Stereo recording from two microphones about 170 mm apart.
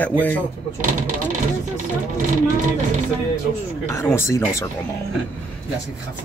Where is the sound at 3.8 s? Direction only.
15° left (ahead or behind).